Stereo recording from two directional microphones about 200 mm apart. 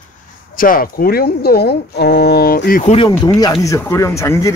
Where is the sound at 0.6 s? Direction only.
45° left (ahead or behind).